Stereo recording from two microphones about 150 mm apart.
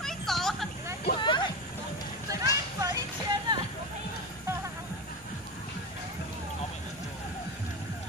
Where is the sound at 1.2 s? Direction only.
30° left (ahead or behind).